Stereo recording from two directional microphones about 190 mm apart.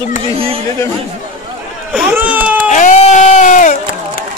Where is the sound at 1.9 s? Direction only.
10° right (ahead or behind).